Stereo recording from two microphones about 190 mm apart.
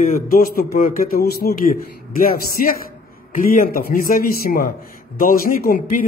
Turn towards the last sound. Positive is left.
turn(degrees=45)  # may be behind; listen again after turning